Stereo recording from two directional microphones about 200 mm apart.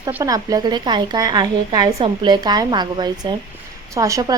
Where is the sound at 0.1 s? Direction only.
15° right (ahead or behind).